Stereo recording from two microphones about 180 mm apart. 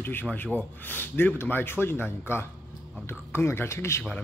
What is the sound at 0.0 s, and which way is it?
A man's voice, 10° left (ahead or behind).